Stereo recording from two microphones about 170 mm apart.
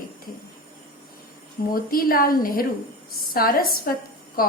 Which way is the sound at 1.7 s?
60° left (ahead or behind).